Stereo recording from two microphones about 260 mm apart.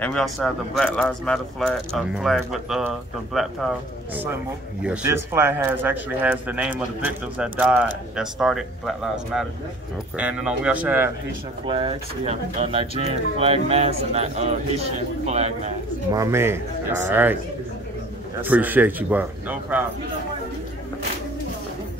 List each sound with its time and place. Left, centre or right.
0.0 s speech: centre
4.8 s speech: centre
11.6 s speech: right
16.1 s speech: centre
18.4 s speech: centre